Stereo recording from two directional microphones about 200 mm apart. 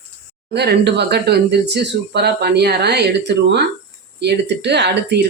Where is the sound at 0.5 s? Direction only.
55° right (ahead or behind).